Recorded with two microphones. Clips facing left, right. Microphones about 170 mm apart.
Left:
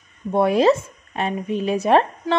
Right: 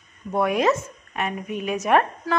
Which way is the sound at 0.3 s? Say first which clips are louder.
Left 5 dB; 30° left (ahead or behind).